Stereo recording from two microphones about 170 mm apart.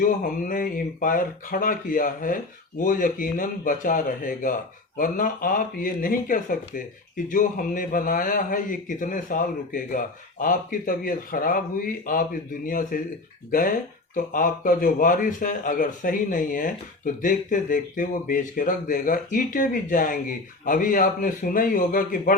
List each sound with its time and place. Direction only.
0.0 s speech: 55° left (ahead or behind)